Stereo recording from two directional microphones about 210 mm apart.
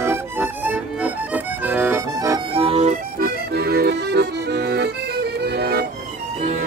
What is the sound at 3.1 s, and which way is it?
Accordion, 45° right (ahead or behind).